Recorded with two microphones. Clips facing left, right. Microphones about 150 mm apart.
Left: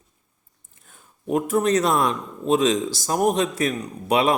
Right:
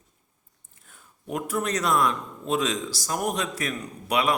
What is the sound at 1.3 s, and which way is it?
A man's voice, 25° left (ahead or behind).